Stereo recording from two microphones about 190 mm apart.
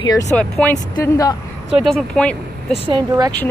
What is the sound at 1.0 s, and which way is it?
Speech, 20° left (ahead or behind).